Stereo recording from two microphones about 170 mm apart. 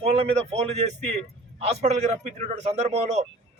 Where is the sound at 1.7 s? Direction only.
40° right (ahead or behind).